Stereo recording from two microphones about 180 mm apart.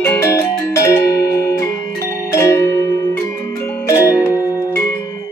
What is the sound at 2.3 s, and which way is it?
Music, 15° left (ahead or behind).